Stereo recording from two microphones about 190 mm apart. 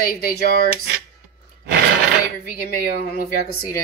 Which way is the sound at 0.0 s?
50° left (ahead or behind).